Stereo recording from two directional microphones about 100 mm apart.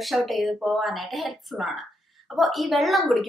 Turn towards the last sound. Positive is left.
turn(degrees=0)  # may be behind; listen again after turning